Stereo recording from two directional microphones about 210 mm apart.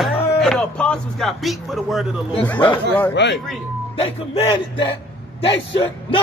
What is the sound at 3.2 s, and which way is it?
Speech, 55° left (ahead or behind).